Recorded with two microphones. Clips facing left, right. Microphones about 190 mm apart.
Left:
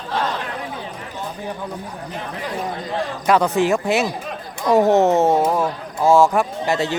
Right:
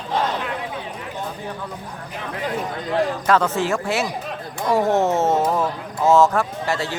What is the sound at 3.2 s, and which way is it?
Speech, 15° left (ahead or behind).